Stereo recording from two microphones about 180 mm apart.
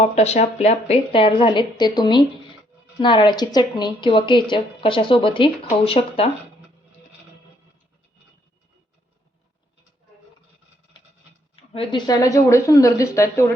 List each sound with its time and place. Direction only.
0.0 s a woman's voice: 40° left (ahead or behind)
11.7 s a woman's voice: 30° left (ahead or behind)